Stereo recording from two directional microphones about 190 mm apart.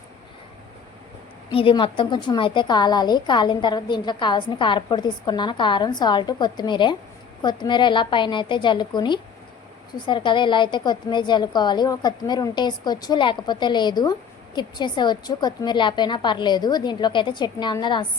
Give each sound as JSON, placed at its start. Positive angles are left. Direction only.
{"t": 1.5, "sound": "a woman's voice", "side_deg": 30}